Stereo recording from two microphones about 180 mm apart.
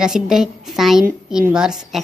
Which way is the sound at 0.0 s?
5° right (ahead or behind).